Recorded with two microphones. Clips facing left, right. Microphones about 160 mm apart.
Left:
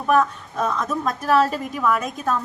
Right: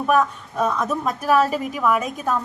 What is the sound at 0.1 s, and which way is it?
A woman's voice, 10° right (ahead or behind).